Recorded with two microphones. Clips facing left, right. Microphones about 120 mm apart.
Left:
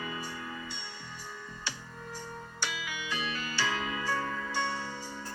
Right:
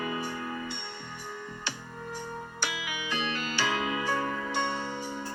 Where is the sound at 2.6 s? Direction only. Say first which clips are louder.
Right 2 dB; 60° right (ahead or behind).